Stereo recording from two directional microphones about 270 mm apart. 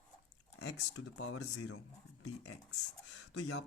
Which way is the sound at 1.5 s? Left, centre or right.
Left.